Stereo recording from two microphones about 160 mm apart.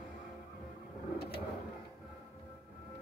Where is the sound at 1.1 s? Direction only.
80° left.